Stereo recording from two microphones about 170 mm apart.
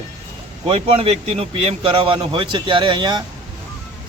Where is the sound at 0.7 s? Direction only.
35° right (ahead or behind).